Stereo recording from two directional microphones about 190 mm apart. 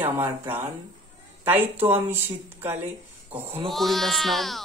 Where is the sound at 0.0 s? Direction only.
10° right (ahead or behind).